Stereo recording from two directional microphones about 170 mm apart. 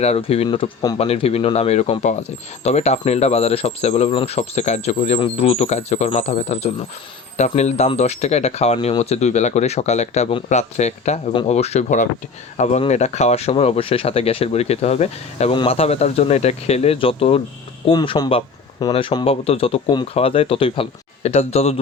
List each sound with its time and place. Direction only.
0.0 s speech: 35° left (ahead or behind)
0.9 s speech: 40° left (ahead or behind)